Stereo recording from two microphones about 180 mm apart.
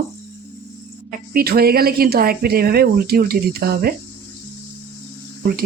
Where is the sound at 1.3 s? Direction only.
55° right (ahead or behind).